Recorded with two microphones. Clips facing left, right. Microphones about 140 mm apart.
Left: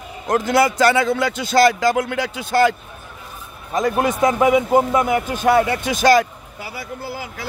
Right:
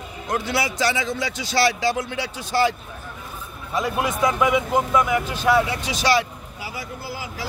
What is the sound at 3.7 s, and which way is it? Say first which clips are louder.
A man's voice: left 5 dB; 45° left (ahead or behind).